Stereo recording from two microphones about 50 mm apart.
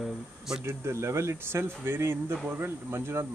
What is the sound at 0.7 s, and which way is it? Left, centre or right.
Speech, right.